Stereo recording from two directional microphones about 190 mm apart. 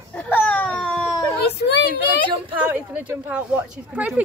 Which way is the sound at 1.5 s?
60° left (ahead or behind).